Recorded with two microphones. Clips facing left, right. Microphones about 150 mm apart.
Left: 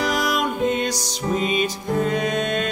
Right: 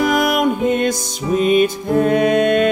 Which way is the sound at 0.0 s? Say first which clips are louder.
Right 7 dB; 55° right (ahead or behind).